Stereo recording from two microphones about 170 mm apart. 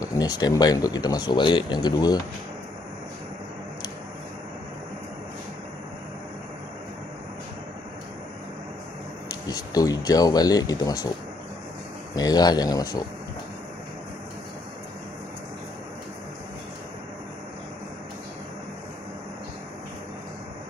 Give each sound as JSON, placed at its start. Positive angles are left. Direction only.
{"t": 0.0, "sound": "speech", "side_deg": 20}
{"t": 9.3, "sound": "speech", "side_deg": 20}
{"t": 12.2, "sound": "speech", "side_deg": 20}